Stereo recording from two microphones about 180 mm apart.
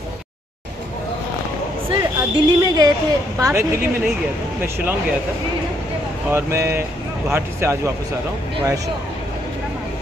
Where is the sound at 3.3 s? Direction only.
15° right (ahead or behind).